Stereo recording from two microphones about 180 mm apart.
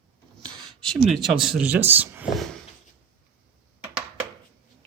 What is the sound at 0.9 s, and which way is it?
Speech, centre (ahead or behind).